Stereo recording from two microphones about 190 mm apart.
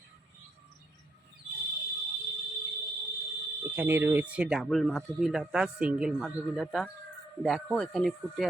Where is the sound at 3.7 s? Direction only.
10° right (ahead or behind).